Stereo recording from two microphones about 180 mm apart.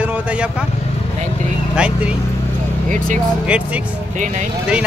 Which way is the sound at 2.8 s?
45° right (ahead or behind).